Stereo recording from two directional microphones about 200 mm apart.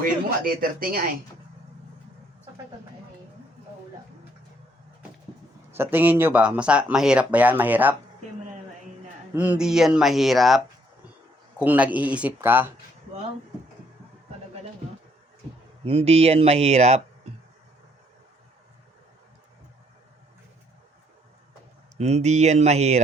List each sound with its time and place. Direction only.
0.0 s speech: 45° right (ahead or behind)
5.7 s speech: 10° right (ahead or behind)
9.3 s speech: 10° right (ahead or behind)
11.6 s speech: 10° right (ahead or behind)
15.8 s speech: 30° right (ahead or behind)
21.9 s speech: 35° right (ahead or behind)